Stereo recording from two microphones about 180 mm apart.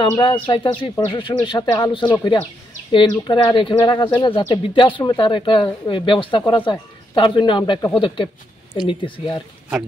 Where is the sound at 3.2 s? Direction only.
25° left (ahead or behind).